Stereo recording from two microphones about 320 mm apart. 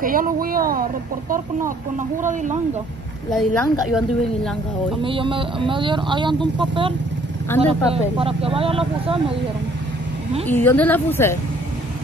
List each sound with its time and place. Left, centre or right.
0.0 s speech: right
2.2 s speech: right
3.3 s speech: centre
5.0 s speech: centre
10.4 s a woman's voice: centre